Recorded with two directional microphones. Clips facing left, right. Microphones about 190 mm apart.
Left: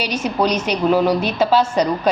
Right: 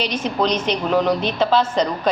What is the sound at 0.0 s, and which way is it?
A man's voice, 10° left (ahead or behind).